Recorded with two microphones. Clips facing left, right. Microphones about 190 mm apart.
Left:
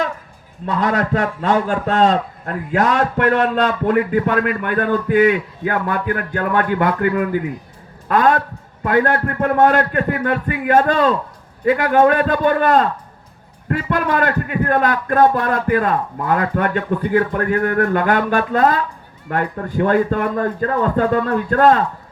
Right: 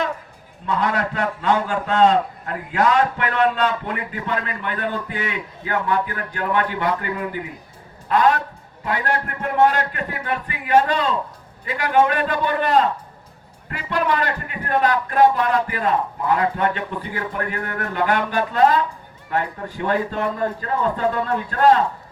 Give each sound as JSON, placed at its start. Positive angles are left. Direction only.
{"t": 0.6, "sound": "a man's voice", "side_deg": 45}